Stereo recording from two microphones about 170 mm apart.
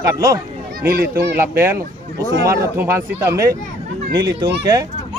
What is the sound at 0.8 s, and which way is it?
Speech, 65° right (ahead or behind).